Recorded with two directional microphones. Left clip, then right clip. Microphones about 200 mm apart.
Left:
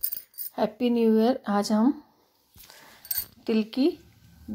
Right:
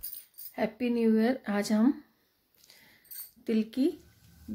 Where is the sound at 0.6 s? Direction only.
15° left (ahead or behind).